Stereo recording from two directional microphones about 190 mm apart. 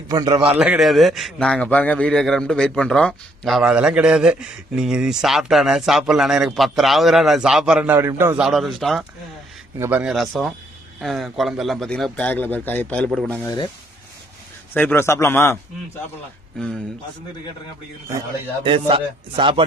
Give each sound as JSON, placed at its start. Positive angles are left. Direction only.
{"t": 0.1, "sound": "speech", "side_deg": -20}
{"t": 0.6, "sound": "a man's voice", "side_deg": -5}
{"t": 8.5, "sound": "a man's voice", "side_deg": 0}
{"t": 13.4, "sound": "speech", "side_deg": 20}
{"t": 14.7, "sound": "a man's voice", "side_deg": 10}
{"t": 18.6, "sound": "speech", "side_deg": -25}